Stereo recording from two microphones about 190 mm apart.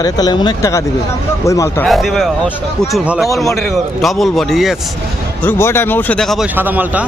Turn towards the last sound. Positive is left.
turn(degrees=-10)  # may be behind; listen again after turning